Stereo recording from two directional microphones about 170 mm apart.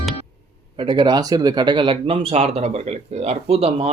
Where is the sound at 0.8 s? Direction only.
25° right (ahead or behind).